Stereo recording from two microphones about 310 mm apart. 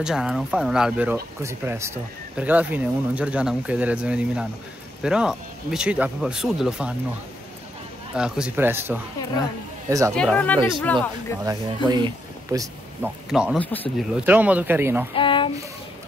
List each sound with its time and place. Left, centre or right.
0.0 s speech: centre
8.2 s speech: centre
10.1 s speech: centre
11.4 s speech: centre
14.2 s speech: centre
15.1 s a sound: centre